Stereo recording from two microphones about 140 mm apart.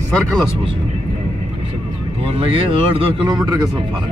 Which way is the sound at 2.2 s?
40° right (ahead or behind).